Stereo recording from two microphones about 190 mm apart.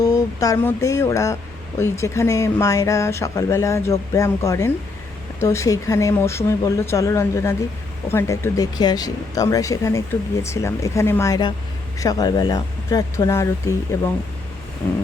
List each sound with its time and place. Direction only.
0.0 s speech: 15° left (ahead or behind)